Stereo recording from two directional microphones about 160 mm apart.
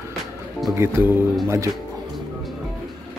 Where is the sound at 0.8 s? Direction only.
15° right (ahead or behind).